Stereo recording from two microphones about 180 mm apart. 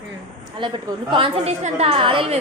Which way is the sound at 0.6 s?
25° right (ahead or behind).